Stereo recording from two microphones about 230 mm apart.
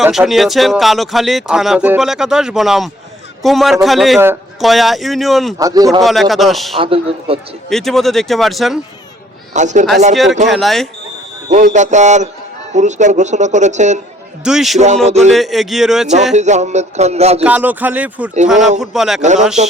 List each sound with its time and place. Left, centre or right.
0.0 s speech: centre
5.5 s speech: centre
6.0 s speech: centre
6.7 s a sound: right
7.7 s speech: centre
9.5 s speech: right
10.5 s speech: centre
11.5 s speech: right
14.4 s speech: centre
15.0 s a sound: right
15.3 s speech: centre
16.3 s a sound: right
17.4 s speech: centre
19.6 s a sound: right